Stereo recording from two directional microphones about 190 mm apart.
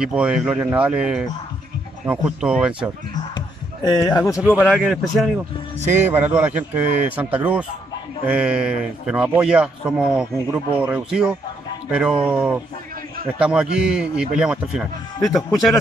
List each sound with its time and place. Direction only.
0.0 s a man's voice: 5° right (ahead or behind)
3.3 s a sound: 20° left (ahead or behind)
4.4 s a man's voice: 5° right (ahead or behind)
5.9 s a man's voice: 10° right (ahead or behind)
15.1 s speech: 20° left (ahead or behind)